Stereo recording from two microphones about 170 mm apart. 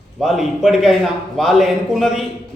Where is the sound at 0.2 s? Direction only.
Centre (ahead or behind).